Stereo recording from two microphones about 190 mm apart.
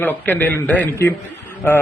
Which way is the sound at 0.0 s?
10° left (ahead or behind).